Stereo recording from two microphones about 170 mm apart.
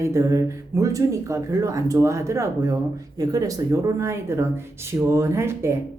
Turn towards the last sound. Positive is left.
turn(degrees=-15)  # may be behind; listen again after turning